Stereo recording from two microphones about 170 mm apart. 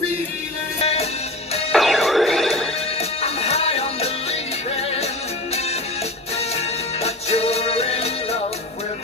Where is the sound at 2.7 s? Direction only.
35° left (ahead or behind).